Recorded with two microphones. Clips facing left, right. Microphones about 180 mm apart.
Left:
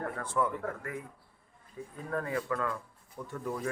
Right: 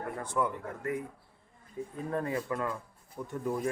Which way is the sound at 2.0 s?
20° right (ahead or behind).